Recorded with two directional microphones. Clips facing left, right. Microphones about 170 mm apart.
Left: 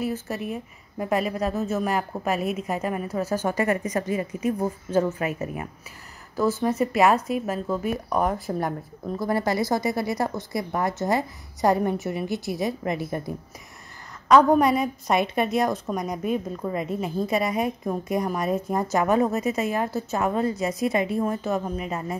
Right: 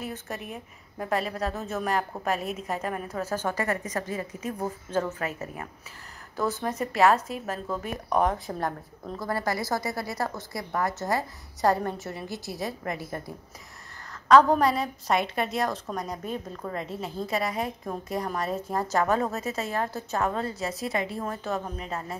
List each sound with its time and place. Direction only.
0.0 s a woman's voice: 5° left (ahead or behind); by 13.2 s 20° left (ahead or behind)
14.3 s a woman's voice: 15° left (ahead or behind)